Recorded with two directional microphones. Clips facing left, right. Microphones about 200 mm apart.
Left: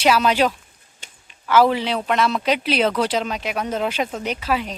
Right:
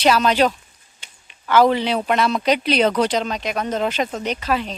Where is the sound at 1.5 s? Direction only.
5° left (ahead or behind).